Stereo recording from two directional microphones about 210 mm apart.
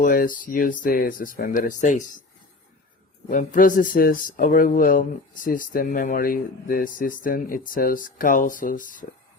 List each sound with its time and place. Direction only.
0.0 s speech: 40° left (ahead or behind)
3.2 s speech: 40° left (ahead or behind)